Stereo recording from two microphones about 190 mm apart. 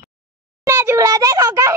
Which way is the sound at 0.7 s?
15° right (ahead or behind).